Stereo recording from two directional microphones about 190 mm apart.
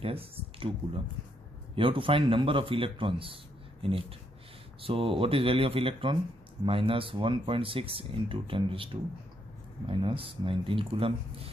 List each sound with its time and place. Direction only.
0.0 s speech: 30° right (ahead or behind)
1.8 s speech: 25° right (ahead or behind)